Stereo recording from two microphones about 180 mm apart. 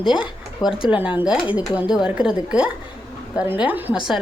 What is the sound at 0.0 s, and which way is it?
A woman's voice, 5° right (ahead or behind).